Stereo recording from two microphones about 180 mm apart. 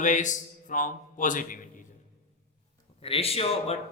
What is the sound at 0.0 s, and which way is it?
Speech, 45° left (ahead or behind).